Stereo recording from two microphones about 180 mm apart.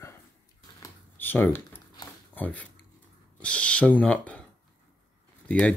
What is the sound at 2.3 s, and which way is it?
Speech, 10° left (ahead or behind).